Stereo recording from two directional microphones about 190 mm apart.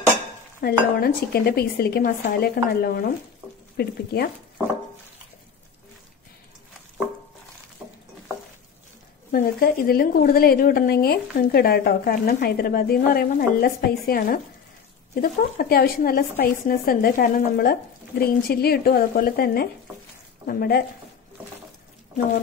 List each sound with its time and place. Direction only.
0.6 s a woman's voice: 55° left (ahead or behind)
7.8 s stir: 15° right (ahead or behind)
9.3 s a woman's voice: 50° left (ahead or behind)